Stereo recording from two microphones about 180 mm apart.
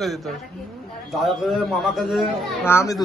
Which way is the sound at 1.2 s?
Centre (ahead or behind).